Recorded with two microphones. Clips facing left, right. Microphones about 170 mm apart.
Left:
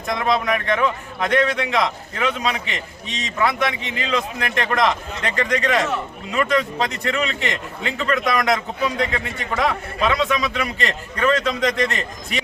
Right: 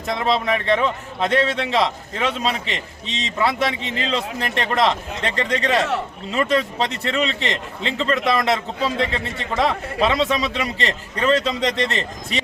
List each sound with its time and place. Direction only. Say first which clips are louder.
0.1 s a man's voice: even; 30° right (ahead or behind)